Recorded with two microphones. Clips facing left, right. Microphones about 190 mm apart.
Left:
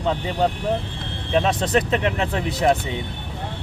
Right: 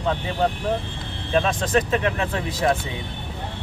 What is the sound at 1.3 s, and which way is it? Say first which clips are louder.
Speech: left 1 dB; 20° left (ahead or behind).